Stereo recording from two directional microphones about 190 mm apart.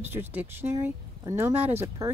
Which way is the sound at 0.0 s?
10° right (ahead or behind).